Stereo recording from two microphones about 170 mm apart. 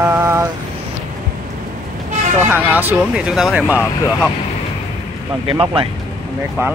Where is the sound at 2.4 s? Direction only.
10° right (ahead or behind).